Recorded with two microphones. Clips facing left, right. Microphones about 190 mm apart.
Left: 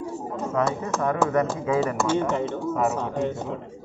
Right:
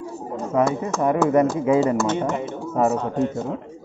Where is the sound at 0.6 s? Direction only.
20° right (ahead or behind).